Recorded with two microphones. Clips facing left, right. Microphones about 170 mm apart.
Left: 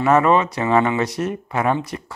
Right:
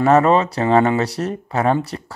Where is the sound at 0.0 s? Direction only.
35° right (ahead or behind).